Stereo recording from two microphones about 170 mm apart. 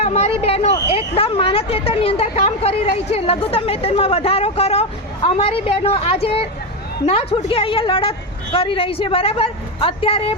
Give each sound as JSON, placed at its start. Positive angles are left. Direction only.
{"t": 0.0, "sound": "speech", "side_deg": 40}